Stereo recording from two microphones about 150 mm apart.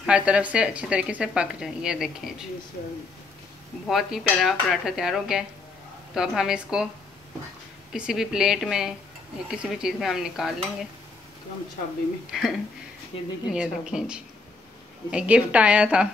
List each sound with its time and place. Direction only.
0.0 s a woman's voice: 5° right (ahead or behind)
3.9 s speech: centre (ahead or behind)
7.9 s speech: 5° right (ahead or behind)
12.3 s a woman's voice: centre (ahead or behind)